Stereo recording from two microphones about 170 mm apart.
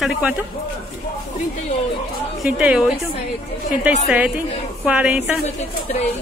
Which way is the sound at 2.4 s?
5° right (ahead or behind).